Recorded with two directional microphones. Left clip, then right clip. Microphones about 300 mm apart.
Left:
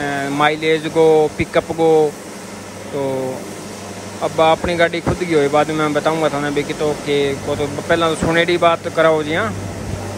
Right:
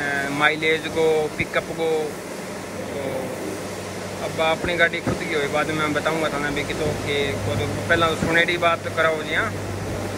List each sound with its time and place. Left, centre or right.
0.0 s speech: centre
4.4 s speech: centre